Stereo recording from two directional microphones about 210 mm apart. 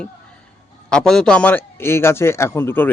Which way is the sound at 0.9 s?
Centre (ahead or behind).